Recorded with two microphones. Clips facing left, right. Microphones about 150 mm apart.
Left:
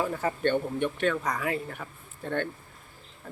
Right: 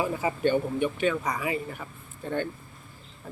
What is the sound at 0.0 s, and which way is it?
Speech, 5° right (ahead or behind).